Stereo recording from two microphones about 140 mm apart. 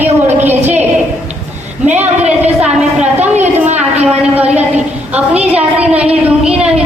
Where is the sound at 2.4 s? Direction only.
10° right (ahead or behind).